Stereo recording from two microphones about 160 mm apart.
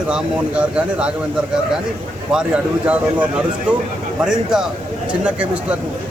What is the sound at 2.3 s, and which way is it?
A man's voice, 5° right (ahead or behind).